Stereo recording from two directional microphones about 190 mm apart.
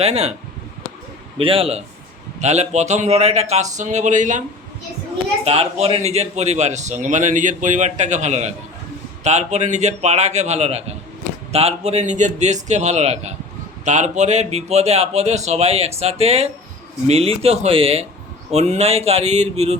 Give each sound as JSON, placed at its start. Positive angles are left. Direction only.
{"t": 0.0, "sound": "speech", "side_deg": -35}
{"t": 1.4, "sound": "a man's voice", "side_deg": -30}
{"t": 5.5, "sound": "speech", "side_deg": -30}